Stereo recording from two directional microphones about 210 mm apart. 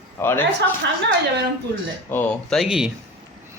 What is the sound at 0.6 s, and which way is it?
Speech, 60° right (ahead or behind).